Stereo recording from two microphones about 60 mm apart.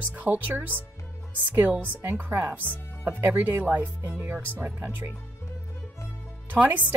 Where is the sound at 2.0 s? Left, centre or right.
Right.